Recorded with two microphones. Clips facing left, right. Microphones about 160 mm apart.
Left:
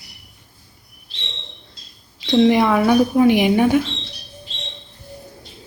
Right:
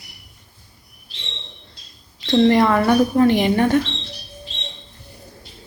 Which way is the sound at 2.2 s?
5° left (ahead or behind).